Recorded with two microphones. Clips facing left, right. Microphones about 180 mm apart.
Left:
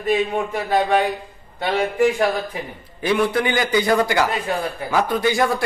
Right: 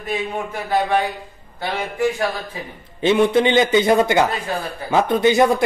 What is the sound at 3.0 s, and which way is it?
A man's voice, 25° right (ahead or behind).